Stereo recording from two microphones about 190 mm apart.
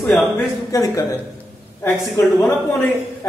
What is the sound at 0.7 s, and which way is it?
A man's voice, 20° left (ahead or behind).